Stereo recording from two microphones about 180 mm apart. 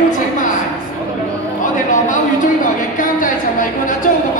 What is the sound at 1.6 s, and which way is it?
Speech, 45° left (ahead or behind).